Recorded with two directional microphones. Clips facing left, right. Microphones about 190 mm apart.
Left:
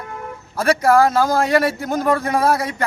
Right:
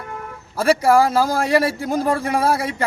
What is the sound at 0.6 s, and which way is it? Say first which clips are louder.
A man's voice: even; 30° right (ahead or behind).